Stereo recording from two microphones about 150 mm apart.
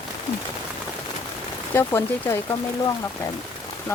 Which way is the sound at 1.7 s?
15° left (ahead or behind).